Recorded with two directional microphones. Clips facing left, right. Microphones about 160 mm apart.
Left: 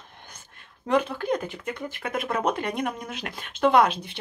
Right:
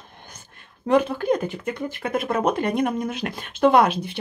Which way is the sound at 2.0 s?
40° right (ahead or behind).